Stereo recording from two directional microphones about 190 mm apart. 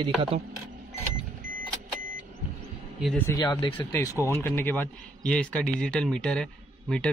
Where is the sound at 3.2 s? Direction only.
20° left (ahead or behind).